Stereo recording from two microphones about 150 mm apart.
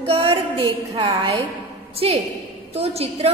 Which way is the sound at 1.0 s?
25° right (ahead or behind).